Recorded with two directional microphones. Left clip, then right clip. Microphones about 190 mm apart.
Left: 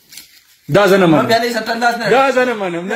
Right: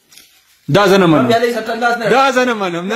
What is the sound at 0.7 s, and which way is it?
A man's voice, 40° right (ahead or behind).